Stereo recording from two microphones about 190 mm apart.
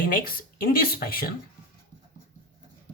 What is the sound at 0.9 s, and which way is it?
Speech, 50° left (ahead or behind).